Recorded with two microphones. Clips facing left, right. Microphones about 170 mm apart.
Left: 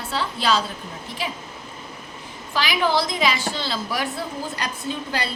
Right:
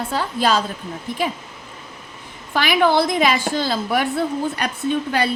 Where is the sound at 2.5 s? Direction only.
55° right (ahead or behind).